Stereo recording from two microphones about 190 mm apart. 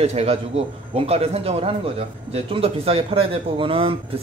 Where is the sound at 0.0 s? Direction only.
35° right (ahead or behind).